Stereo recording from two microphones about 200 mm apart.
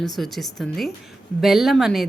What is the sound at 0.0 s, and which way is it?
A woman's voice, centre (ahead or behind).